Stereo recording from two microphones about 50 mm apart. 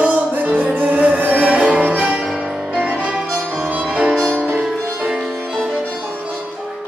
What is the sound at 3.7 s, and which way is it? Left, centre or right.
Music, right.